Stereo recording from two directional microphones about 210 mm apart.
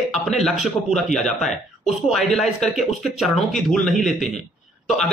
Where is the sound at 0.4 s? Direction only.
Centre (ahead or behind).